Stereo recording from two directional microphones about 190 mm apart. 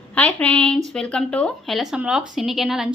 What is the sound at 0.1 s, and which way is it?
A woman's voice, 5° left (ahead or behind).